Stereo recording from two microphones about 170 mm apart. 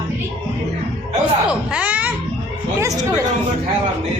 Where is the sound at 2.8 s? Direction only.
20° right (ahead or behind).